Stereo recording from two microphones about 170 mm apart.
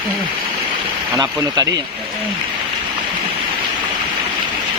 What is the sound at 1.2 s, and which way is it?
Speech, 25° right (ahead or behind).